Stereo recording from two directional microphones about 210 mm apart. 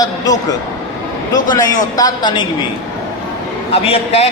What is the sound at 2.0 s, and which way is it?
Speech, 20° left (ahead or behind).